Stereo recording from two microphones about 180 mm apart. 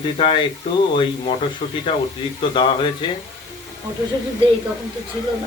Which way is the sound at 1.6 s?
40° left (ahead or behind).